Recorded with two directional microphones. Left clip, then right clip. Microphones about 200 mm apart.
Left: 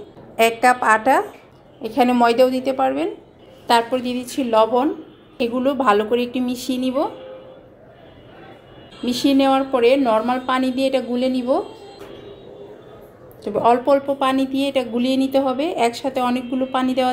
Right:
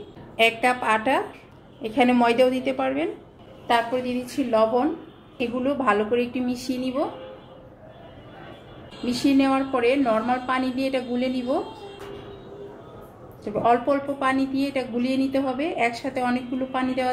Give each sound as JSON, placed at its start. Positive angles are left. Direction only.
{"t": 0.4, "sound": "a woman's voice", "side_deg": 25}
{"t": 3.6, "sound": "a woman's voice", "side_deg": 40}
{"t": 9.0, "sound": "a woman's voice", "side_deg": 35}
{"t": 13.4, "sound": "a woman's voice", "side_deg": 35}